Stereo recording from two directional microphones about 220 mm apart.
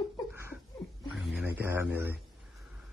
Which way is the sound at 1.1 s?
5° right (ahead or behind).